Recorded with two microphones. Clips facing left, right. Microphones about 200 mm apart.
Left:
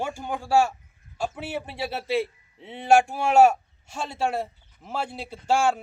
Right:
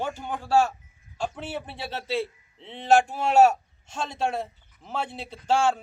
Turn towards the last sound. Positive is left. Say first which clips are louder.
# left 1 dB
turn(degrees=10)  # may be behind; listen again after turning